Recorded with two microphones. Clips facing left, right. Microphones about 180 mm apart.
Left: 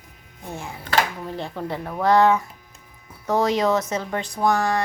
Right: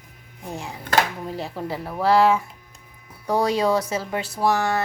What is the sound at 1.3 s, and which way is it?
A woman's voice, 5° right (ahead or behind).